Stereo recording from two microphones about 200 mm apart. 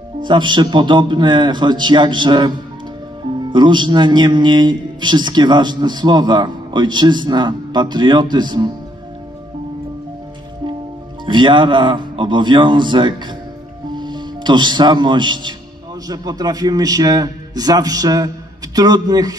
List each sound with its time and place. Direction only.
0.2 s a man's voice: 25° right (ahead or behind)
11.2 s a man's voice: 25° right (ahead or behind)